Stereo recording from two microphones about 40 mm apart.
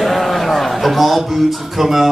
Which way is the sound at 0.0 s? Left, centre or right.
Centre.